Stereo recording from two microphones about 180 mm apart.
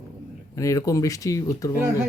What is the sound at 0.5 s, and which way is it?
Speech, 20° left (ahead or behind).